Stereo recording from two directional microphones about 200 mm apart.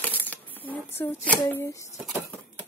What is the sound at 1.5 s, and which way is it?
Speech, 15° left (ahead or behind).